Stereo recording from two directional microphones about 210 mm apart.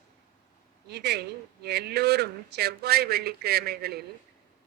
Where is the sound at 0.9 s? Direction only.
50° right (ahead or behind).